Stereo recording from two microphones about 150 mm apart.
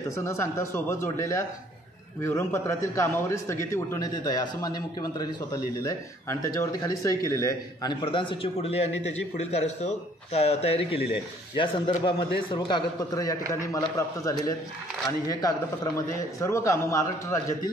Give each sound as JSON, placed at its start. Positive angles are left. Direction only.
{"t": 0.1, "sound": "a man's voice", "side_deg": 20}